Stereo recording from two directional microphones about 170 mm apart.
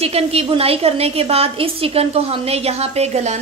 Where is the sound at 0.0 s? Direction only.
35° right (ahead or behind).